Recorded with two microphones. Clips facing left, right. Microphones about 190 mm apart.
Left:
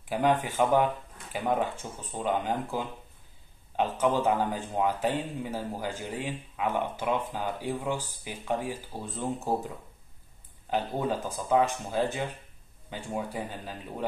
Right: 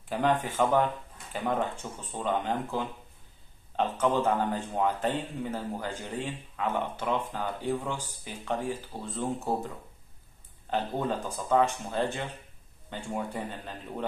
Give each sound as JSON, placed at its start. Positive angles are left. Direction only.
{"t": 0.1, "sound": "a man's voice", "side_deg": 10}
{"t": 10.7, "sound": "a man's voice", "side_deg": 5}